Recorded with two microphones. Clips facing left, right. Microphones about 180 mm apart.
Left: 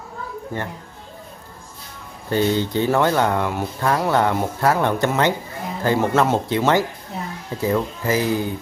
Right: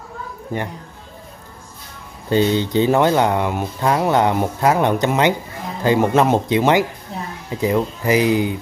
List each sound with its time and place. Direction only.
0.5 s speech: 15° right (ahead or behind)
2.2 s speech: 20° right (ahead or behind)